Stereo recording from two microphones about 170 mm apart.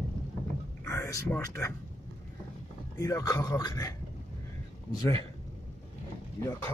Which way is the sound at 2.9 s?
20° left (ahead or behind).